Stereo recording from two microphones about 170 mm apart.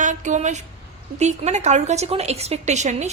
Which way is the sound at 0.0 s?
45° right (ahead or behind).